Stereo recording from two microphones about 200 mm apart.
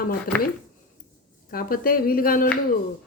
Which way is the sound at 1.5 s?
45° left (ahead or behind).